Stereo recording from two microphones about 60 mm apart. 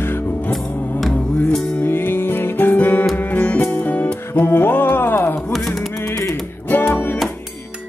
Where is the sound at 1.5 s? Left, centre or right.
Centre.